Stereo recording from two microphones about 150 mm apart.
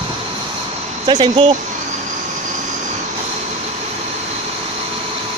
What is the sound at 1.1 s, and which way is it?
Speech, 35° right (ahead or behind).